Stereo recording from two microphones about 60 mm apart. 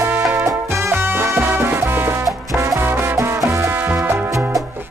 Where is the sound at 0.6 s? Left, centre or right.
Right.